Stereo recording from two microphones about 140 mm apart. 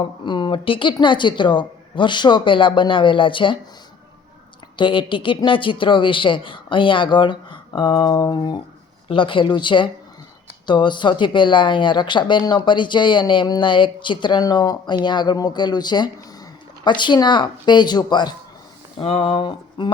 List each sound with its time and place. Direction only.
0.0 s speech: 35° left (ahead or behind)
4.8 s speech: 35° left (ahead or behind)
18.9 s speech: 40° left (ahead or behind)